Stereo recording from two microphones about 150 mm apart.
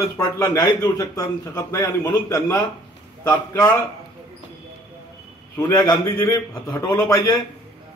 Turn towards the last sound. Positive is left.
turn(degrees=20)  # may be behind; listen again after turning